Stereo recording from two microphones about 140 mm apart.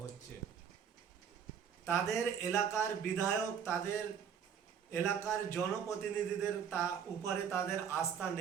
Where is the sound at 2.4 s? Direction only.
20° left (ahead or behind).